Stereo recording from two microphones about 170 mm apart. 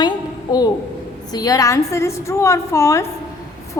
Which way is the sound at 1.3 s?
20° left (ahead or behind).